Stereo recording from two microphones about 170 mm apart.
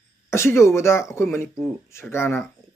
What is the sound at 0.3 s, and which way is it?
Speech, 15° left (ahead or behind).